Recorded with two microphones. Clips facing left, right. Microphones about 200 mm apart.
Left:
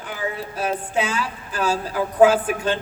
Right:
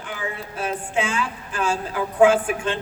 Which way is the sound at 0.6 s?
35° left (ahead or behind).